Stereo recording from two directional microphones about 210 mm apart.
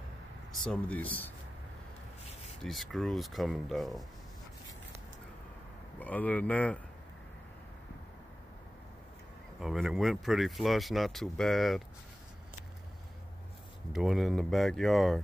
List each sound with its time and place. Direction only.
0.5 s speech: 5° left (ahead or behind)
2.6 s speech: centre (ahead or behind)
5.9 s speech: 5° left (ahead or behind)
9.6 s speech: centre (ahead or behind)
13.9 s speech: centre (ahead or behind)